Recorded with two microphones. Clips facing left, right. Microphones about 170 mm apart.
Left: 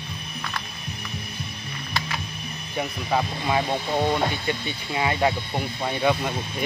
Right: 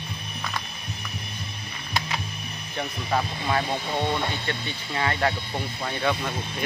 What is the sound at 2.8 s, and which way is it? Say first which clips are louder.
Speech: left 2 dB; 10° left (ahead or behind).